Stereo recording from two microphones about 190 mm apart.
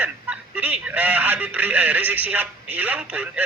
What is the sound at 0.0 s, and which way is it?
A man's voice, 10° right (ahead or behind).